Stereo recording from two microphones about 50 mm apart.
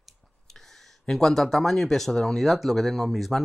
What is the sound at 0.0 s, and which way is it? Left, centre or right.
Speech, centre.